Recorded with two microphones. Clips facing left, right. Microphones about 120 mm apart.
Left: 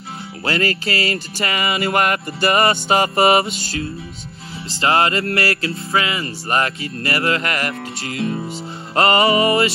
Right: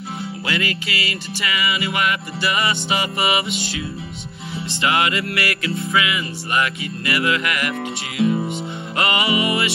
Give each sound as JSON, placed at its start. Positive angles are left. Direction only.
{"t": 0.5, "sound": "music", "side_deg": 40}
{"t": 4.8, "sound": "music", "side_deg": 35}